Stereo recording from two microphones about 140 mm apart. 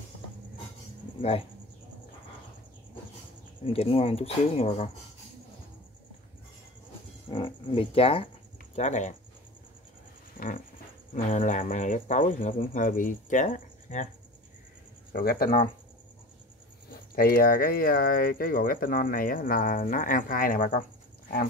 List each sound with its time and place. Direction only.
3.6 s speech: 45° left (ahead or behind)
7.2 s speech: 35° left (ahead or behind)
8.7 s speech: 55° left (ahead or behind)
10.3 s a sound: 80° left
11.1 s speech: 65° left (ahead or behind)
15.1 s speech: 90° left
17.1 s speech: 90° left